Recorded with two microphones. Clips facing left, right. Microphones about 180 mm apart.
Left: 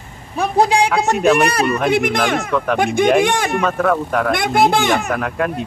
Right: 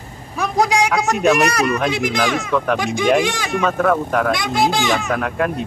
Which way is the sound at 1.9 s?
60° left (ahead or behind).